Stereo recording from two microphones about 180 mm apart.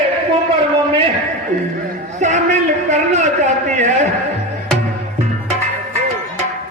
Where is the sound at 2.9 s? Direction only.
40° right (ahead or behind).